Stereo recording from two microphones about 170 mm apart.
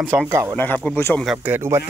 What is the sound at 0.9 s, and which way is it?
Speech, 15° left (ahead or behind).